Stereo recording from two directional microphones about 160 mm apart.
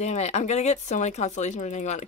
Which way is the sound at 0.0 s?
45° left (ahead or behind).